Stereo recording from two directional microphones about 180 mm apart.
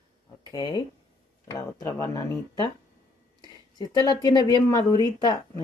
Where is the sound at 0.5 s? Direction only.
25° left (ahead or behind).